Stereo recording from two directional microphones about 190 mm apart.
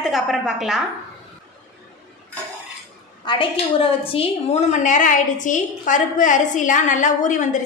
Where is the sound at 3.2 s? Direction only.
25° left (ahead or behind).